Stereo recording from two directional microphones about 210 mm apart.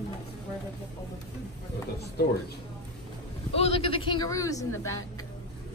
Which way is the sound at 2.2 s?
50° left (ahead or behind).